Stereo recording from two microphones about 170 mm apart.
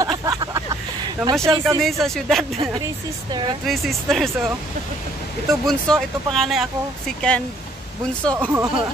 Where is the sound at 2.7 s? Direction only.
25° right (ahead or behind).